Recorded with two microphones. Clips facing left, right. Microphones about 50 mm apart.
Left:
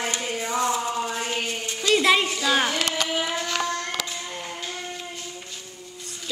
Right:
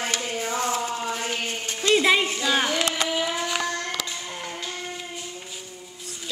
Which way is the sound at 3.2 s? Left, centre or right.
Centre.